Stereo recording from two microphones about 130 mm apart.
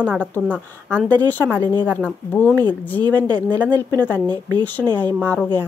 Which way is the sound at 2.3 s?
10° left (ahead or behind).